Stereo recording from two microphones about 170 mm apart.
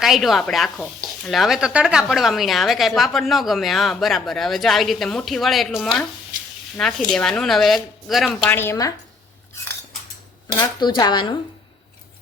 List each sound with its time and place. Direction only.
0.0 s speech: centre (ahead or behind)
8.4 s speech: 15° left (ahead or behind)
10.6 s speech: 25° left (ahead or behind)